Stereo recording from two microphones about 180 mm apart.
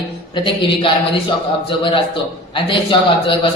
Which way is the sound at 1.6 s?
30° left (ahead or behind).